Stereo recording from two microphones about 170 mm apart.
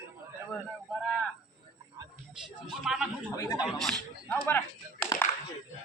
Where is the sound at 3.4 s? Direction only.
20° left (ahead or behind).